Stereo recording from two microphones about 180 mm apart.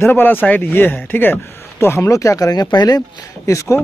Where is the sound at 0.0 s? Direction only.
10° left (ahead or behind).